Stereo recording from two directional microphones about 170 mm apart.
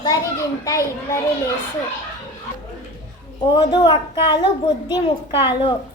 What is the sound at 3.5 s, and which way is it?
A child's voice, 25° left (ahead or behind).